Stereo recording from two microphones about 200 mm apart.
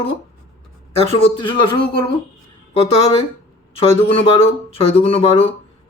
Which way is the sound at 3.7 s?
30° left (ahead or behind).